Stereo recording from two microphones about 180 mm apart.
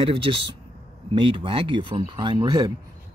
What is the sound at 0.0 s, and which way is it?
Speech, 30° right (ahead or behind).